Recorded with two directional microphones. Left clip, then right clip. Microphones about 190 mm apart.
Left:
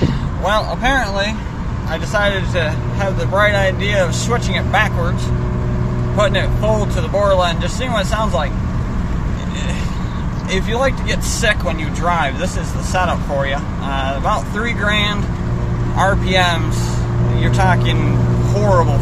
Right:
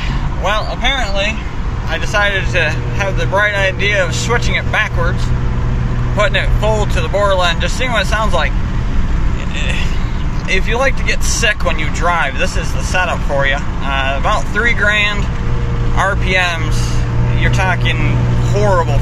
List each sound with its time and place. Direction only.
0.4 s vehicle: 20° left (ahead or behind)
1.9 s speech: 10° left (ahead or behind)
6.1 s speech: 10° left (ahead or behind)
10.5 s speech: 10° left (ahead or behind)